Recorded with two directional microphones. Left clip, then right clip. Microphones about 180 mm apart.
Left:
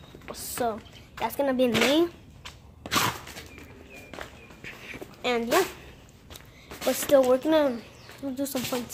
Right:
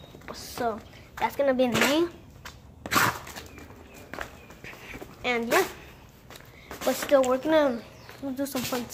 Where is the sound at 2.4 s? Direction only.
25° right (ahead or behind).